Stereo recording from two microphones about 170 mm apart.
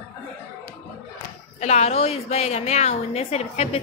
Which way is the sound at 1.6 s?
40° left (ahead or behind).